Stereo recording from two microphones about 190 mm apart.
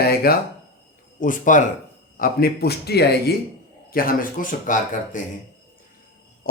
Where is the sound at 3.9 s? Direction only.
50° left (ahead or behind).